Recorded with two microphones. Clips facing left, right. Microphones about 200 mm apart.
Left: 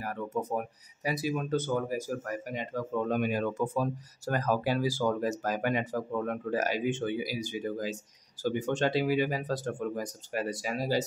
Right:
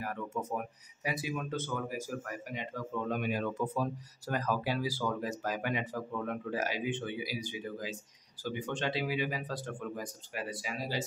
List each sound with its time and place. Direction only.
0.0 s speech: 35° left (ahead or behind)